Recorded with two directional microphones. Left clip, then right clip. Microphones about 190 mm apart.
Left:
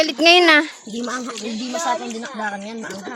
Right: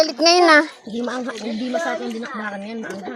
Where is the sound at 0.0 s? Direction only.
40° left (ahead or behind).